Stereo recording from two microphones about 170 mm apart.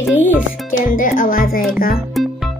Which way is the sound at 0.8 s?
50° left (ahead or behind).